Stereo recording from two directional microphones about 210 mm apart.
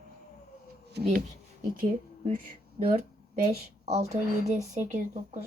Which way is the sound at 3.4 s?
30° right (ahead or behind).